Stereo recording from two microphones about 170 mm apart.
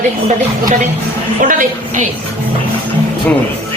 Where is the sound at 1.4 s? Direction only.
50° right (ahead or behind).